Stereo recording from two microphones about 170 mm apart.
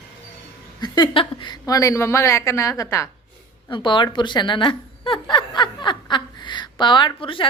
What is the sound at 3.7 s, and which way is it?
Speech, 30° left (ahead or behind).